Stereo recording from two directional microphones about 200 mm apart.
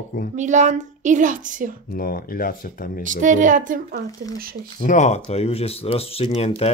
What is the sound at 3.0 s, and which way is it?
Speech, 40° right (ahead or behind).